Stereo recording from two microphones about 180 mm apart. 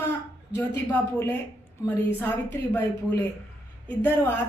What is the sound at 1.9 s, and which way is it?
A woman's voice, 10° left (ahead or behind).